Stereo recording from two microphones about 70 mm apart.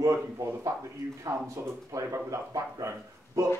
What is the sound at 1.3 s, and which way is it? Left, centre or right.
Speech, right.